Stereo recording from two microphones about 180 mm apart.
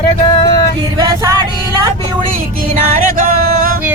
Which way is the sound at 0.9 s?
20° right (ahead or behind).